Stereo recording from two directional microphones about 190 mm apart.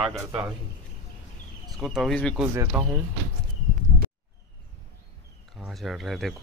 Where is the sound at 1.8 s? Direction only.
Centre (ahead or behind).